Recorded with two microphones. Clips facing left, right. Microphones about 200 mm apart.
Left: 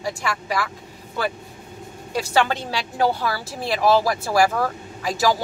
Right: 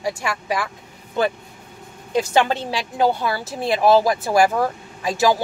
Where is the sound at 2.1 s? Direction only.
20° right (ahead or behind).